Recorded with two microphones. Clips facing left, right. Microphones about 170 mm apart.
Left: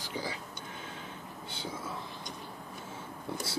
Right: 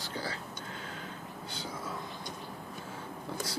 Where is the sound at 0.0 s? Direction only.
15° left (ahead or behind).